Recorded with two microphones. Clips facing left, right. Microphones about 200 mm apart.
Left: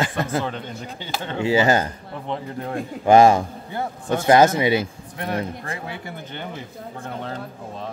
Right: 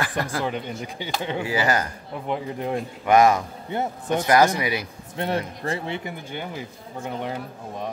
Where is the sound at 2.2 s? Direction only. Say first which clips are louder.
Right 2 dB; 10° right (ahead or behind).